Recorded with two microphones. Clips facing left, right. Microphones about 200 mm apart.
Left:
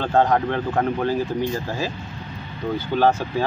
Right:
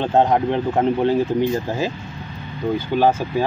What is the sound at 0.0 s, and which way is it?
Speech, 20° right (ahead or behind).